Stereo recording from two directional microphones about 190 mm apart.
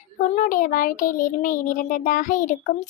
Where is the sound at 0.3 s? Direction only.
45° left (ahead or behind).